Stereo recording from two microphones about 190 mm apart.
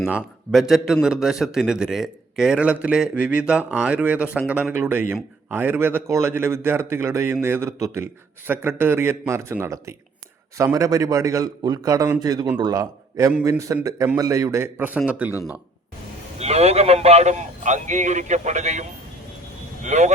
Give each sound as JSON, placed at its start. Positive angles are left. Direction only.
{"t": 0.0, "sound": "a man's voice", "side_deg": -5}
{"t": 16.4, "sound": "a man's voice", "side_deg": -35}